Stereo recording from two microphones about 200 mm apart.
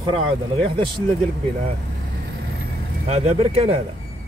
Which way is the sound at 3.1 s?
30° right (ahead or behind).